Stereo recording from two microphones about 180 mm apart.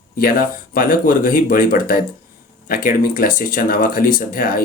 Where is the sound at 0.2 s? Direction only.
50° left (ahead or behind).